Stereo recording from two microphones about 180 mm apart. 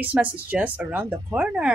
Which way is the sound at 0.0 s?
10° right (ahead or behind).